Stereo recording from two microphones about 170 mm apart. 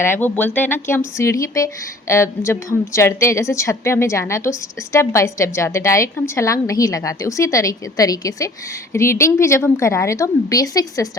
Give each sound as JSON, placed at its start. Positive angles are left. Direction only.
{"t": 0.0, "sound": "speech", "side_deg": 10}